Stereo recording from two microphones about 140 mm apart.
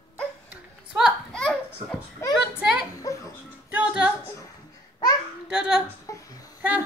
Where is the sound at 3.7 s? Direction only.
10° right (ahead or behind).